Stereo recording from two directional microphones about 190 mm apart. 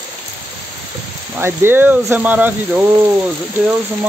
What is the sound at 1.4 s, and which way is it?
Speech, 10° right (ahead or behind).